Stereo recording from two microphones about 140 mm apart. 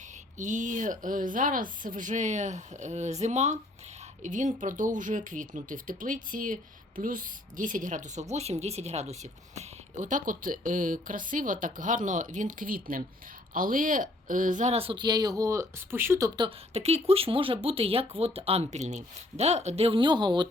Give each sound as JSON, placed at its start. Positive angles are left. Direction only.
{"t": 0.3, "sound": "a woman's voice", "side_deg": -65}
{"t": 13.5, "sound": "speech", "side_deg": -75}
{"t": 16.7, "sound": "speech", "side_deg": -45}